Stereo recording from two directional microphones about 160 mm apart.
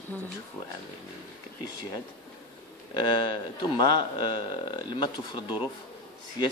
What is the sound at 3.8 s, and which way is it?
Speech, 25° left (ahead or behind).